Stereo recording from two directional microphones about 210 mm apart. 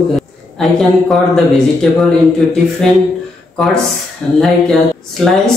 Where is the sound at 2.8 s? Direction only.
5° left (ahead or behind).